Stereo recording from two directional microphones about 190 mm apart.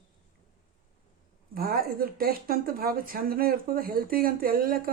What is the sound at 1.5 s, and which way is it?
Speech, 50° right (ahead or behind).